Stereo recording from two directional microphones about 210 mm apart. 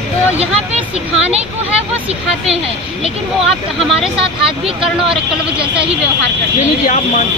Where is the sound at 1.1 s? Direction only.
30° right (ahead or behind).